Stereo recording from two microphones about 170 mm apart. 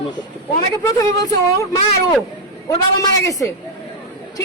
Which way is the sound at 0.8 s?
20° left (ahead or behind).